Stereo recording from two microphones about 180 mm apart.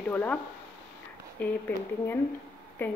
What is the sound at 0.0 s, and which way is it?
Speech, 10° left (ahead or behind).